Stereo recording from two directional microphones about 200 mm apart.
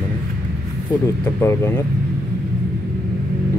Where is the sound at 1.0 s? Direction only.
15° left (ahead or behind).